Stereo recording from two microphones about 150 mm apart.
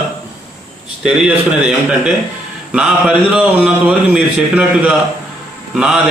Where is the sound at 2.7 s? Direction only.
5° right (ahead or behind).